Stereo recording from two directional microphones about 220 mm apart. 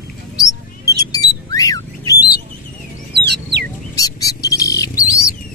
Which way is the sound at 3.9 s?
15° left (ahead or behind).